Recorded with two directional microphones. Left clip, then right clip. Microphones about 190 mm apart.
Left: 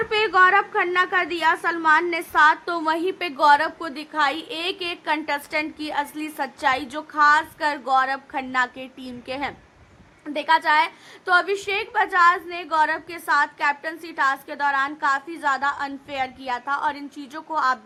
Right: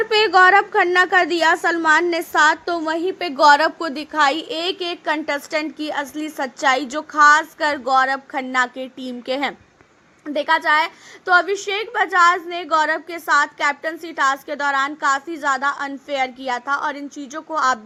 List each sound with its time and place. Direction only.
0.1 s a woman's voice: 25° right (ahead or behind); by 3.2 s 5° right (ahead or behind)
3.3 s a woman's voice: 30° right (ahead or behind); by 17.7 s 15° right (ahead or behind)